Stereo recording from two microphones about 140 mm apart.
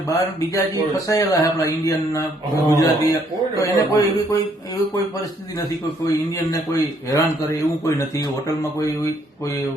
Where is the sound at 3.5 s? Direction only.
25° left (ahead or behind).